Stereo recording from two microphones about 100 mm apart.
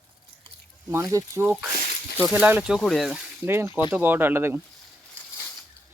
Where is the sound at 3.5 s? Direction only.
25° right (ahead or behind).